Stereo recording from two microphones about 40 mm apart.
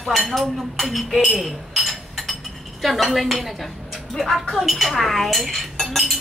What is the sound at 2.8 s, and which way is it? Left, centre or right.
Speech, centre.